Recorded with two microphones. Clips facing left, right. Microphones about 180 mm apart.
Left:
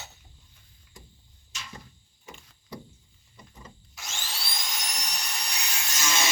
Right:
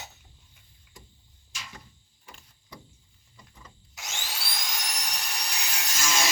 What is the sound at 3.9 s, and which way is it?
Vacuum cleaner, 15° right (ahead or behind).